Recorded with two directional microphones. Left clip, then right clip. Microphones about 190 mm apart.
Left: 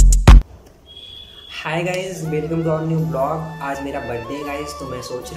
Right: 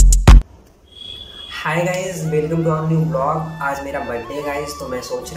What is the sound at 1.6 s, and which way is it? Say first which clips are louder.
Speech: right 3 dB; 15° left (ahead or behind).